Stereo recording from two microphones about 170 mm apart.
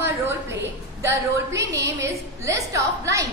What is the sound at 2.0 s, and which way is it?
A woman's voice, 20° right (ahead or behind).